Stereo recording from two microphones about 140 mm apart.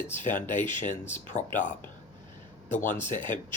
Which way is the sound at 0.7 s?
60° left (ahead or behind).